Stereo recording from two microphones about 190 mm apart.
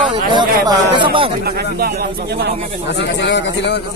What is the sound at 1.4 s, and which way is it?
Speech, 55° right (ahead or behind).